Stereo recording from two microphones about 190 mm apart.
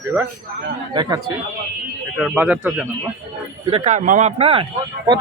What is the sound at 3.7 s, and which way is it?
Speech, 40° right (ahead or behind).